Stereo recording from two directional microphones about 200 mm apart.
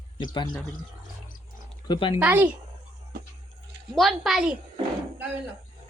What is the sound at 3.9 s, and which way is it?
Speech, centre (ahead or behind).